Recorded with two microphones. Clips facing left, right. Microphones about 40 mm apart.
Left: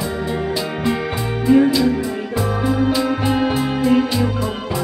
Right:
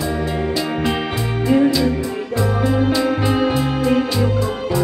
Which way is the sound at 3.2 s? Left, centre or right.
Left.